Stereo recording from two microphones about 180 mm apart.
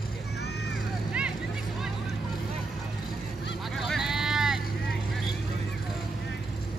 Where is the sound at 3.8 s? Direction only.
Centre (ahead or behind).